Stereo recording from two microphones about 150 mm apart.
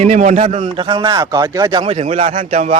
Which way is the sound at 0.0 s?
50° right (ahead or behind).